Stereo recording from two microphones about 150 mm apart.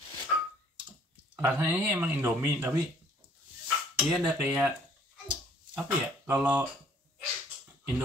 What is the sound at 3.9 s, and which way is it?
Speech, 10° right (ahead or behind).